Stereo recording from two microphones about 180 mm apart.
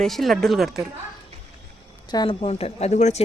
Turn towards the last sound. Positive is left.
turn(degrees=40)  # may be behind; listen again after turning